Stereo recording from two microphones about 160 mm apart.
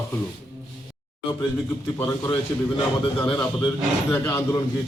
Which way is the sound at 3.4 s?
25° left (ahead or behind).